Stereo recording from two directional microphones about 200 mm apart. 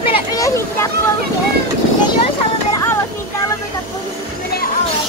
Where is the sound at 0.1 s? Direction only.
20° left (ahead or behind).